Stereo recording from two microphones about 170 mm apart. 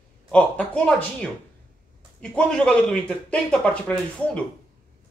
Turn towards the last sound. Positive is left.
turn(degrees=5)  # may be behind; listen again after turning